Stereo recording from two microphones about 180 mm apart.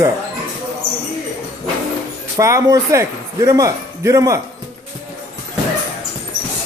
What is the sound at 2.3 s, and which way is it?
Speech, 20° right (ahead or behind).